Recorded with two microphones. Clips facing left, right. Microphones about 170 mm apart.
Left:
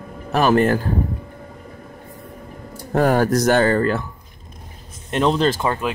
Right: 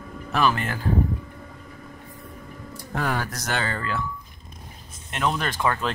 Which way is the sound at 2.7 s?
45° left (ahead or behind).